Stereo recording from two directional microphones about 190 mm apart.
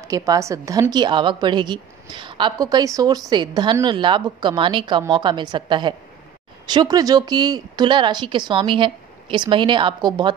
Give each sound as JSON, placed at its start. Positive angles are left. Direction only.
{"t": 0.0, "sound": "a woman's voice", "side_deg": -15}